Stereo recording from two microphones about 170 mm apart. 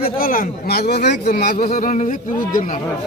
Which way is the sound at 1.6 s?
50° left (ahead or behind).